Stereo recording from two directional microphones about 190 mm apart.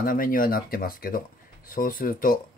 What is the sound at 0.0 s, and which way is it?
Speech, 45° left (ahead or behind).